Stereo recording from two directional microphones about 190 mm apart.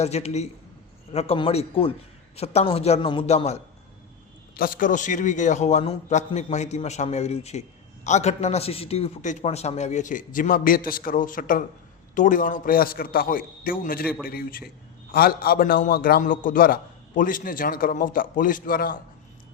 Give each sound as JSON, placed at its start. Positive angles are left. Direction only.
{"t": 0.0, "sound": "a man's voice", "side_deg": 35}
{"t": 4.5, "sound": "a man's voice", "side_deg": 50}